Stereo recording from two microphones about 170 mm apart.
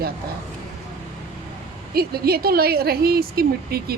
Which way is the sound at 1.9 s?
65° right (ahead or behind).